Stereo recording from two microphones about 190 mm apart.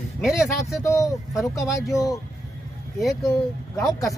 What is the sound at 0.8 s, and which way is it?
Speech, 15° left (ahead or behind).